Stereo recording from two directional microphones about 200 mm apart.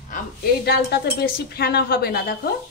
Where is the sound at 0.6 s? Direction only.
55° left (ahead or behind).